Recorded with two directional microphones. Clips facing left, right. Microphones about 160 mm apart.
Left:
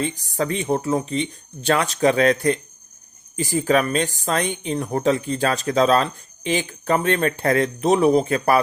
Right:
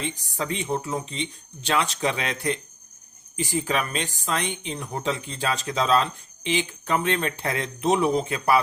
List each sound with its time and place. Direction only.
0.3 s speech: 45° left (ahead or behind)